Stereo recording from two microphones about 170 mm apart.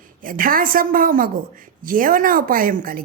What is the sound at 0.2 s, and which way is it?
A woman's voice, 55° right (ahead or behind).